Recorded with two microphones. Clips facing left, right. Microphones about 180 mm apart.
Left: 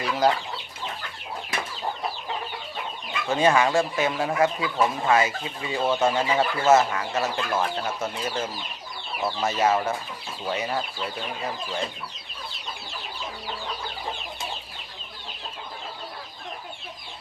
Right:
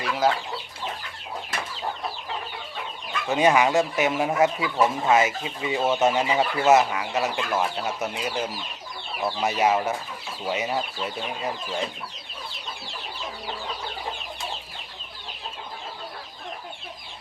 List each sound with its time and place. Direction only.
0.0 s speech: centre (ahead or behind)
3.2 s speech: 15° right (ahead or behind)